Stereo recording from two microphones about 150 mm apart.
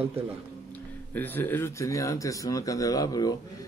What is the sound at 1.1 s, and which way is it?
Speech, 15° left (ahead or behind).